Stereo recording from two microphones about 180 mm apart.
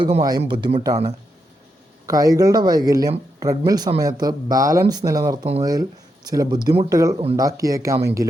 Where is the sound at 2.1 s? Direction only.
20° right (ahead or behind).